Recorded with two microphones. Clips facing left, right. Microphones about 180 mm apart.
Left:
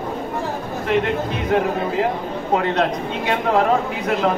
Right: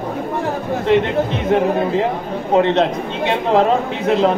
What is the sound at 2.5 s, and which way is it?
Speech, 25° right (ahead or behind).